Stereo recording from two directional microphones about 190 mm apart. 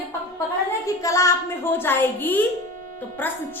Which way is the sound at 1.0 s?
15° left (ahead or behind).